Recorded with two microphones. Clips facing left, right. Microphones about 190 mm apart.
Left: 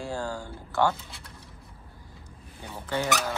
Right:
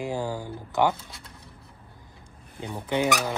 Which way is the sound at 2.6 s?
15° right (ahead or behind).